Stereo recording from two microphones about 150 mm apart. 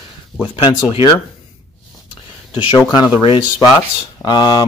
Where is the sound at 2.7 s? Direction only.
25° left (ahead or behind).